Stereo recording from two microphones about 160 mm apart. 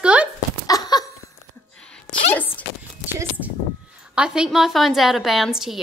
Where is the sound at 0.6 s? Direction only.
25° left (ahead or behind).